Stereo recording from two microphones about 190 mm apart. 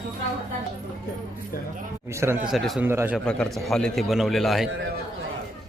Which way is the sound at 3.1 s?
5° left (ahead or behind).